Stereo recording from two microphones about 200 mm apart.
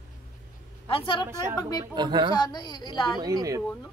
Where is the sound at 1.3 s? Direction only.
15° right (ahead or behind).